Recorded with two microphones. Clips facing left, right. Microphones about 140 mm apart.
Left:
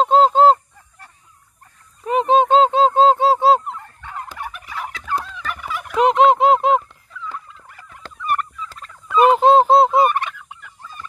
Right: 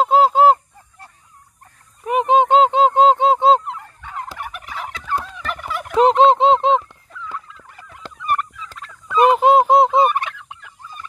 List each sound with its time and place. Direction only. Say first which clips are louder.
0.0 s honk: even; 10° right (ahead or behind)
2.0 s honk: even; 15° right (ahead or behind)
4.7 s turkey: even; centre (ahead or behind)
5.4 s fowl: right 1 dB; 55° right (ahead or behind)
5.9 s a sound: right 1 dB; 30° right (ahead or behind)
7.7 s fowl: right 3 dB; 20° right (ahead or behind)
8.5 s fowl: left 2 dB; 90° right
9.0 s honk: left 1 dB; 15° right (ahead or behind)
10.8 s fowl: left 1 dB; 15° right (ahead or behind)